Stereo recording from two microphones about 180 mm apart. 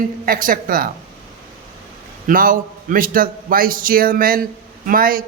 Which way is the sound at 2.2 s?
50° right (ahead or behind).